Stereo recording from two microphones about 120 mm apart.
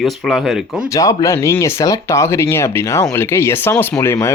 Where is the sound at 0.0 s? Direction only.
Centre (ahead or behind).